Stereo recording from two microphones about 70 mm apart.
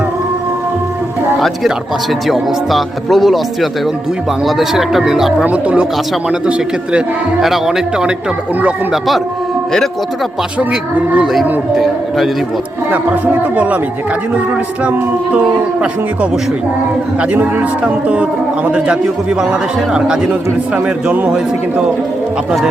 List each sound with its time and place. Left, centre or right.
2.2 s speech: centre
5.5 s speech: centre
7.4 s speech: centre
10.6 s speech: centre
11.8 s speech: centre
17.2 s speech: centre